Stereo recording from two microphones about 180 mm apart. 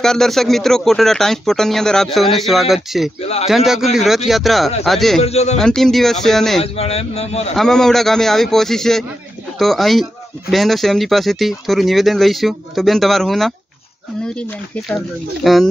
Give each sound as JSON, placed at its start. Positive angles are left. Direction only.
{"t": 0.0, "sound": "speech", "side_deg": 0}
{"t": 3.2, "sound": "a man's voice", "side_deg": 35}
{"t": 3.4, "sound": "speech", "side_deg": 0}
{"t": 5.2, "sound": "a man's voice", "side_deg": 35}
{"t": 5.6, "sound": "speech", "side_deg": 0}
{"t": 6.6, "sound": "a man's voice", "side_deg": 35}
{"t": 7.5, "sound": "speech", "side_deg": 5}
{"t": 15.4, "sound": "speech", "side_deg": 0}